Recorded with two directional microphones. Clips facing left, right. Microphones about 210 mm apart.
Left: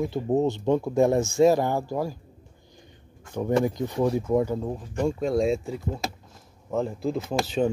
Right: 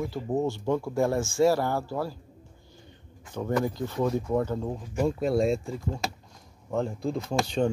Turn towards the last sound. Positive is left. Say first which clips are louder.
# left 1 dB
turn(degrees=5)  # may be behind; listen again after turning